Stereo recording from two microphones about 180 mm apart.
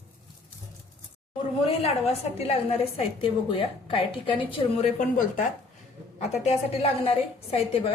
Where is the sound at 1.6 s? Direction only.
35° left (ahead or behind).